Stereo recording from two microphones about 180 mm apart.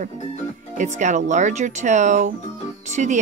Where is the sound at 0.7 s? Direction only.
40° right (ahead or behind).